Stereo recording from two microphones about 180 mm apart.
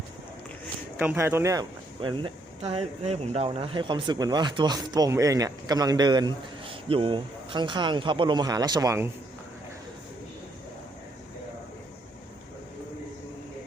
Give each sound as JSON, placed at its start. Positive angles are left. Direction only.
{"t": 0.9, "sound": "speech", "side_deg": -10}
{"t": 2.0, "sound": "speech", "side_deg": -30}